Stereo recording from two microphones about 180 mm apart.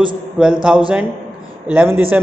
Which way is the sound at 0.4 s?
5° right (ahead or behind).